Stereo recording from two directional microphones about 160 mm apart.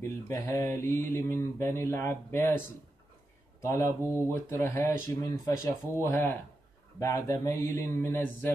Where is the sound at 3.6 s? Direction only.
15° left (ahead or behind).